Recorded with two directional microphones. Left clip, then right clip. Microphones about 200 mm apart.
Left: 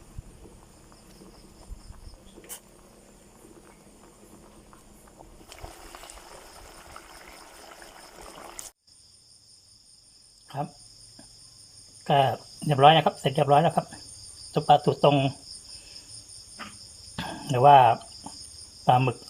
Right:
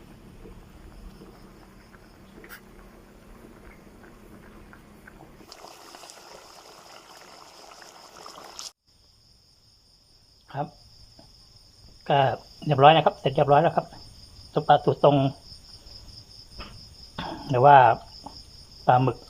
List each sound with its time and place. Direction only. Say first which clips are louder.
5.5 s boat: even; 15° left (ahead or behind)
7.3 s a sound: even; 15° left (ahead or behind)
12.0 s speech: even; 5° left (ahead or behind)
17.2 s cricket: right 2 dB; 5° left (ahead or behind)
18.9 s speech: right 1 dB; 5° left (ahead or behind)